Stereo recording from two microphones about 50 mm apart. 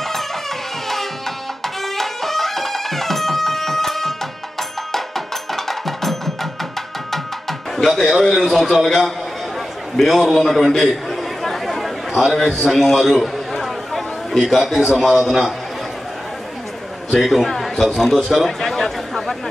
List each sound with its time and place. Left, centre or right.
1.6 s music: centre
8.8 s a man's voice: centre
9.9 s a sound: centre
12.6 s chatter: centre
14.4 s a man's voice: centre
17.2 s a man's voice: centre
17.8 s a sound: centre